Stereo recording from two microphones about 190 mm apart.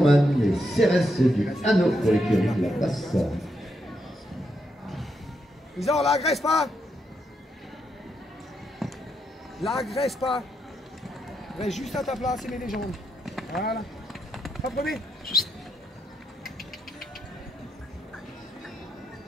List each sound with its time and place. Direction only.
0.0 s a man's voice: centre (ahead or behind)
5.8 s a man's voice: centre (ahead or behind)
6.0 s a man's voice: 35° left (ahead or behind)
6.3 s a man's voice: centre (ahead or behind)
8.8 s a sound: centre (ahead or behind)
9.6 s a man's voice: centre (ahead or behind)
11.5 s a man's voice: centre (ahead or behind)
12.6 s clip-clop: centre (ahead or behind)
16.4 s a sound: centre (ahead or behind)